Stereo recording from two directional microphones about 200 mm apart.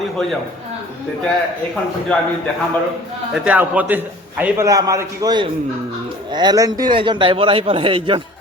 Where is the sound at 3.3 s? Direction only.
5° right (ahead or behind); by 8.2 s 25° right (ahead or behind).